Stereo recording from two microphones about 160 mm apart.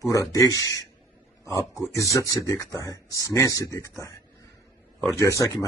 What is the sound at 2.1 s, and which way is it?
Speech, 20° left (ahead or behind).